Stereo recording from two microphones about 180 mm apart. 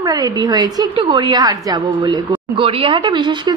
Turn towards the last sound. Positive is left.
turn(degrees=-25)  # may be behind; listen again after turning